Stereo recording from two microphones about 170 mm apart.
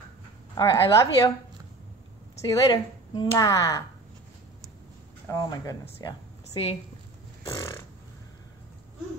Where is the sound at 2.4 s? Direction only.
25° left (ahead or behind).